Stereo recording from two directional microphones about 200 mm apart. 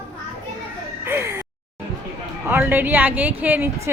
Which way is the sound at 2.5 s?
10° right (ahead or behind).